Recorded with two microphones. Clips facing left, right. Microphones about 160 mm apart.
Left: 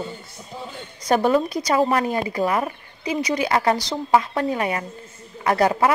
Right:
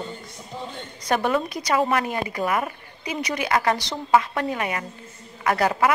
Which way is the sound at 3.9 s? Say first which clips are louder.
Left 1 dB; 15° left (ahead or behind).